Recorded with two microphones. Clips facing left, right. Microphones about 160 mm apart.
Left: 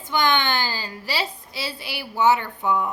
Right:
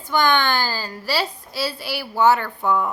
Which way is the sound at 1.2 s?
20° left (ahead or behind).